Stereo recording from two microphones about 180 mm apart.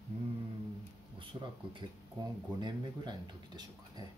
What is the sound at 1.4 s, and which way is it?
Speech, 25° right (ahead or behind).